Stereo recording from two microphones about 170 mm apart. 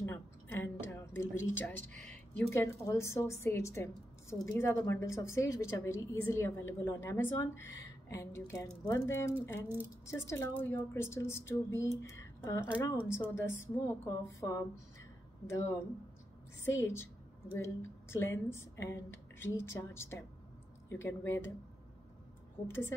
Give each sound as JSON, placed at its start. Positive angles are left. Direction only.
{"t": 0.0, "sound": "a woman's voice", "side_deg": 15}
{"t": 22.7, "sound": "a woman's voice", "side_deg": 15}